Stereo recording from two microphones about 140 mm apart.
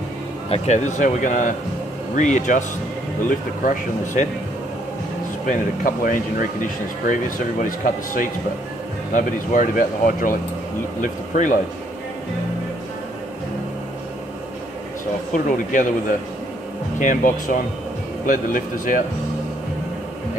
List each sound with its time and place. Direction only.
0.5 s speech: 55° left (ahead or behind)
3.3 s speech: 75° left (ahead or behind)
5.5 s speech: 75° left (ahead or behind)
7.8 s speech: 70° left (ahead or behind)
15.3 s speech: 70° left (ahead or behind)
17.0 s speech: 70° left (ahead or behind)